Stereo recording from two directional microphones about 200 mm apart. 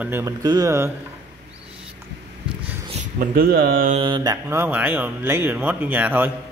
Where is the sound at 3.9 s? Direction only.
25° right (ahead or behind).